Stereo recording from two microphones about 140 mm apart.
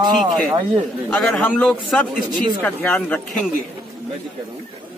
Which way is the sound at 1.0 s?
10° left (ahead or behind).